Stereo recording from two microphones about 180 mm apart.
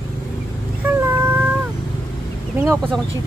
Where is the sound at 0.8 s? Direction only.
10° right (ahead or behind).